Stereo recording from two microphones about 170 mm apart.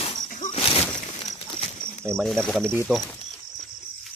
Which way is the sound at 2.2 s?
5° left (ahead or behind).